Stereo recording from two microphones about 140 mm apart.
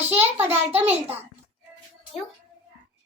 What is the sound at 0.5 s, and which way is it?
Speech, 15° right (ahead or behind).